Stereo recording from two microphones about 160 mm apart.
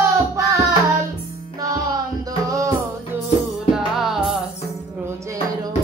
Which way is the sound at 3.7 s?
Centre (ahead or behind).